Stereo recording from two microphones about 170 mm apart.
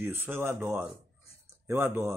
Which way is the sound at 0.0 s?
15° right (ahead or behind).